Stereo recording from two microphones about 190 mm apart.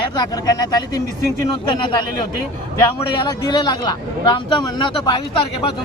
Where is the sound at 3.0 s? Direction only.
20° left (ahead or behind).